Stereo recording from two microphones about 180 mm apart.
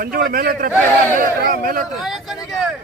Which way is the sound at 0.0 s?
55° right (ahead or behind).